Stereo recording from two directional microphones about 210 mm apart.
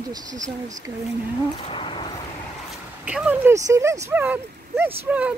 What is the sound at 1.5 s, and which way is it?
Speech, 25° left (ahead or behind).